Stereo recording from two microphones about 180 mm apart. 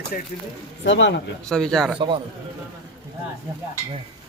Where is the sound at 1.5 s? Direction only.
5° left (ahead or behind).